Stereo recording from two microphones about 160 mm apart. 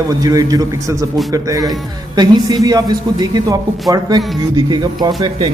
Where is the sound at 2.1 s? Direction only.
25° right (ahead or behind).